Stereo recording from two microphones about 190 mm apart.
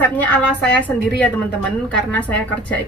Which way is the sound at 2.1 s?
10° left (ahead or behind).